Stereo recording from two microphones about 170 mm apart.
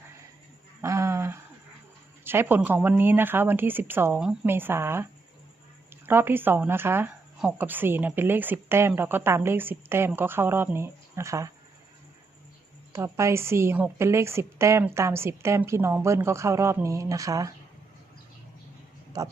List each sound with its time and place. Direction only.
0.8 s a sound: 15° right (ahead or behind)
2.2 s speech: 15° right (ahead or behind)
6.1 s speech: 10° right (ahead or behind)
12.9 s speech: 15° right (ahead or behind)
19.1 s speech: 20° right (ahead or behind)